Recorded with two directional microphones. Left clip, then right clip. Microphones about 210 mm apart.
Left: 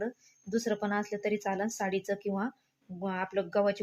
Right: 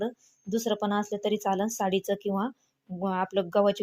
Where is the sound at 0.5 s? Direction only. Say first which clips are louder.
Right 3 dB; 25° right (ahead or behind).